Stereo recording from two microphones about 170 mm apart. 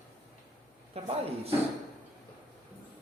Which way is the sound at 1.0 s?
35° right (ahead or behind).